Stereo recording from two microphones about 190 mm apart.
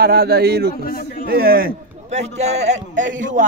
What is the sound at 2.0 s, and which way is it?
A man's voice, 35° right (ahead or behind).